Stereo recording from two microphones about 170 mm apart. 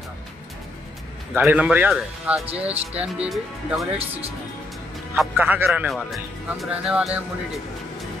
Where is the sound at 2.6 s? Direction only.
35° right (ahead or behind).